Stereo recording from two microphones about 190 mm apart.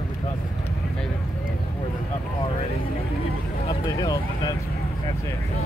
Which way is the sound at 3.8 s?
20° left (ahead or behind).